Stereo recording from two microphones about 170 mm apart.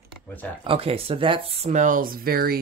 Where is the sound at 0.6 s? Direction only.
35° right (ahead or behind).